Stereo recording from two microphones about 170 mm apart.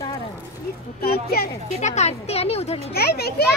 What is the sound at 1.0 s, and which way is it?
Speech, 65° left (ahead or behind).